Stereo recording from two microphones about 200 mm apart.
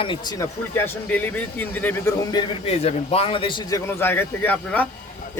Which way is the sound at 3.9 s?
10° left (ahead or behind).